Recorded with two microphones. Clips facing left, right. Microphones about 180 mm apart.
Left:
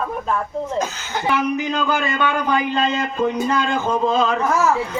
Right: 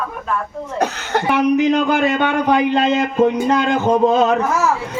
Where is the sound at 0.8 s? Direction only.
65° right (ahead or behind).